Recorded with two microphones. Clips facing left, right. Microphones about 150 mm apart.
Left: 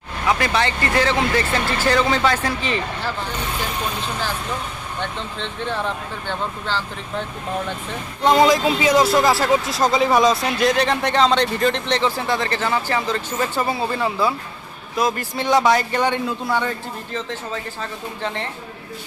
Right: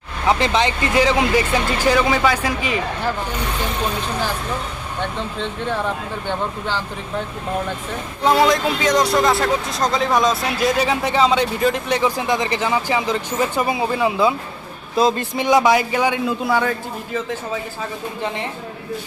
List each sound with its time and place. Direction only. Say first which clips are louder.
0.3 s speech: right 2 dB; 25° right (ahead or behind)
5.4 s speech: right 2 dB; 10° right (ahead or behind)
8.2 s speech: left 1 dB; 5° right (ahead or behind)